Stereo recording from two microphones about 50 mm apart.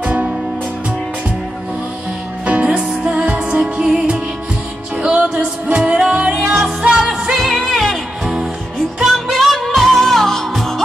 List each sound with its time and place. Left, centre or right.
0.0 s music: right
2.4 s music: right
5.0 s music: right
7.0 s music: centre
9.0 s music: centre